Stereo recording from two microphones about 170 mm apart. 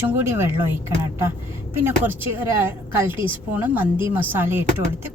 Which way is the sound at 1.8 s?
10° right (ahead or behind).